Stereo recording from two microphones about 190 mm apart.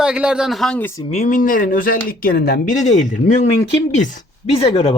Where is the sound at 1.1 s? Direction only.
40° left (ahead or behind).